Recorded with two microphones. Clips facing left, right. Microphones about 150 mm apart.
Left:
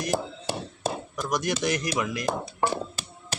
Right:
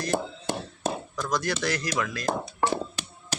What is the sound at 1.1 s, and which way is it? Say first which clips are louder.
Speech: left 3 dB; 20° left (ahead or behind).